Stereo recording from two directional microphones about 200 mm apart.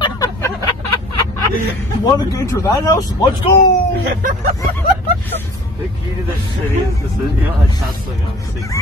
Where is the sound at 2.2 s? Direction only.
15° left (ahead or behind).